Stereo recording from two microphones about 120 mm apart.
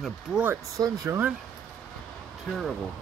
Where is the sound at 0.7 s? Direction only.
30° right (ahead or behind).